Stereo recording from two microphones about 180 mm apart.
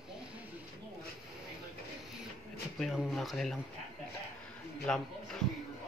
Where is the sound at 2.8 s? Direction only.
Centre (ahead or behind).